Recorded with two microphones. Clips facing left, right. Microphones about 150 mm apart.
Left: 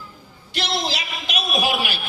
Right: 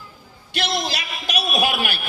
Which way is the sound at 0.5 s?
55° right (ahead or behind).